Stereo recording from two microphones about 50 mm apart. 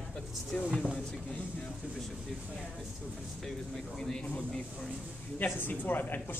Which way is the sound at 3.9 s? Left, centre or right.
Centre.